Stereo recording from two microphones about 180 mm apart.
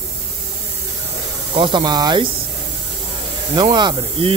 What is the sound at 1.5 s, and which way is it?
Speech, 25° right (ahead or behind).